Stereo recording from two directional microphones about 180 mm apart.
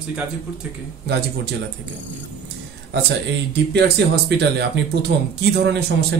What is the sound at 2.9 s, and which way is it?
Speech, 70° right (ahead or behind).